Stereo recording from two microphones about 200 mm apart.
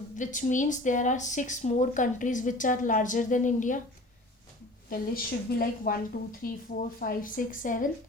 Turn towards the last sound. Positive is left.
turn(degrees=40)  # may be behind; listen again after turning